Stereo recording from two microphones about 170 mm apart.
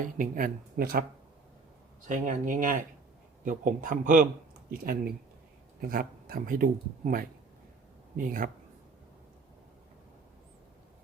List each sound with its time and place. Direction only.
0.0 s speech: 55° right (ahead or behind)
2.0 s a man's voice: 50° right (ahead or behind)